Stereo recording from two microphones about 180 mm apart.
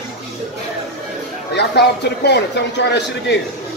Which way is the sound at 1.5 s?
70° left (ahead or behind).